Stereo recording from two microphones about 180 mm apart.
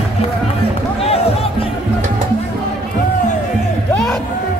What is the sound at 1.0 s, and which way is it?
Music, 35° left (ahead or behind).